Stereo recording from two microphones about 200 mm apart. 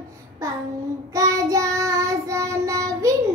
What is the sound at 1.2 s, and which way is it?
Child singing, 15° right (ahead or behind).